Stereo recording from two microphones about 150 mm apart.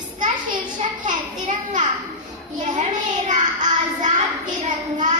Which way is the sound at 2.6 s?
55° right (ahead or behind).